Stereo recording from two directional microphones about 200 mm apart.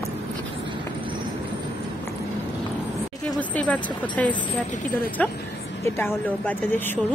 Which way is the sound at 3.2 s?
5° left (ahead or behind).